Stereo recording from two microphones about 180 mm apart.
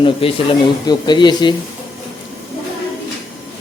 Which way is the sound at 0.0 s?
30° left (ahead or behind).